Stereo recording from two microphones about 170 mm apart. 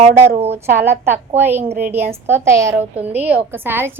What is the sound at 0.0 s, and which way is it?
Speech, 40° right (ahead or behind).